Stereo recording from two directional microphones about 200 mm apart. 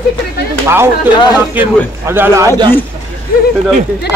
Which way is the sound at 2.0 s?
10° right (ahead or behind).